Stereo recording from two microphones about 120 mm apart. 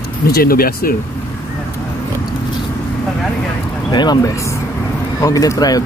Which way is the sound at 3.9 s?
35° left (ahead or behind).